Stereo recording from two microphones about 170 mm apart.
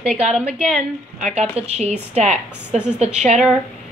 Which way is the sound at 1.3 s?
40° right (ahead or behind).